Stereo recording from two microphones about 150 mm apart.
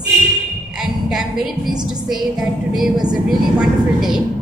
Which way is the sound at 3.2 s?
5° right (ahead or behind).